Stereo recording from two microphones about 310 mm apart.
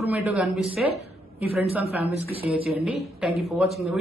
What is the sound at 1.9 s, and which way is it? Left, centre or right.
Speech, centre.